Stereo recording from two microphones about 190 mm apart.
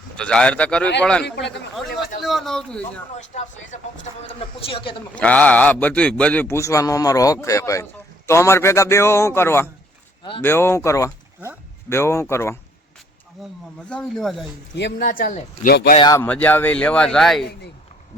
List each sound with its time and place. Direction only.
0.2 s a man's voice: 5° left (ahead or behind)
3.2 s speech: 40° left (ahead or behind)
4.4 s speech: 30° left (ahead or behind)
5.1 s a man's voice: 5° left (ahead or behind)
13.9 s a man's voice: centre (ahead or behind)
14.8 s a man's voice: 60° left (ahead or behind)
16.0 s speech: 20° left (ahead or behind)
16.2 s a man's voice: 10° left (ahead or behind)